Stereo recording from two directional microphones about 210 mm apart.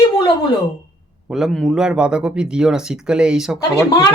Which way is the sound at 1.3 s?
Centre (ahead or behind).